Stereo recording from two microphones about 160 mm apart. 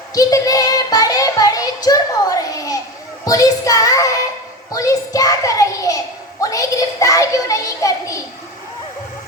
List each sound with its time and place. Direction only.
0.1 s child singing: 20° left (ahead or behind)
4.7 s a child's voice: 20° left (ahead or behind)